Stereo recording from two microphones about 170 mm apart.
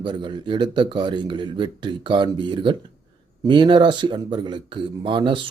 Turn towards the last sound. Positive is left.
turn(degrees=-30)  # may be behind; listen again after turning